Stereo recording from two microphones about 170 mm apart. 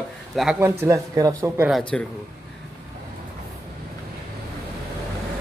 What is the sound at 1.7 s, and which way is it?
Speech, 5° left (ahead or behind).